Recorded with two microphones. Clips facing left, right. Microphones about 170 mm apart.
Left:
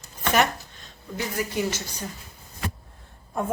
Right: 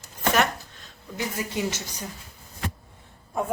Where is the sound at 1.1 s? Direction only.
20° right (ahead or behind).